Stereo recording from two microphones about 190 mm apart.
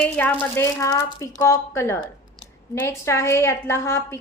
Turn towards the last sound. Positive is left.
turn(degrees=15)  # may be behind; listen again after turning